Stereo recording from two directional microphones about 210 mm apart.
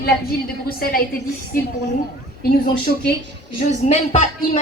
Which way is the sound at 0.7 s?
45° left (ahead or behind).